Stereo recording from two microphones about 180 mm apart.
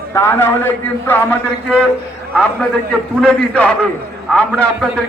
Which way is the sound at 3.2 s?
5° left (ahead or behind).